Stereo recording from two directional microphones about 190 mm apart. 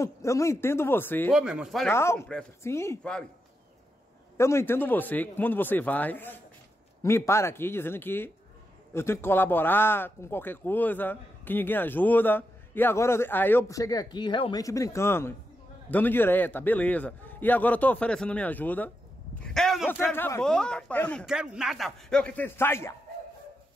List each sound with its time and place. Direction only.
0.0 s speech: 15° left (ahead or behind)
1.3 s speech: 5° right (ahead or behind)
1.9 s speech: 15° left (ahead or behind)
4.4 s speech: 15° left (ahead or behind)
19.3 s a sound: 5° left (ahead or behind)
20.1 s speech: 10° left (ahead or behind)